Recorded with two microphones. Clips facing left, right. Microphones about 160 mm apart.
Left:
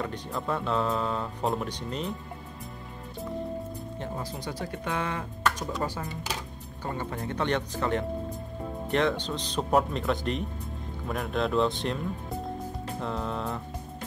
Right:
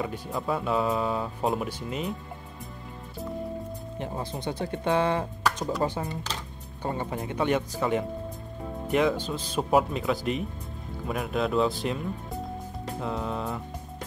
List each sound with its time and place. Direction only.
0.0 s speech: 5° right (ahead or behind)
4.0 s speech: 20° right (ahead or behind); by 12.0 s 5° right (ahead or behind)
13.0 s speech: 5° right (ahead or behind)